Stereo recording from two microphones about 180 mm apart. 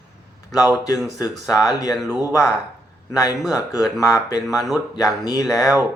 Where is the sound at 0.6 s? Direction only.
5° right (ahead or behind).